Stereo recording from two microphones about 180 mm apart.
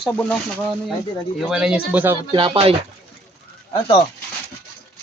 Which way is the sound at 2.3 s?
30° right (ahead or behind).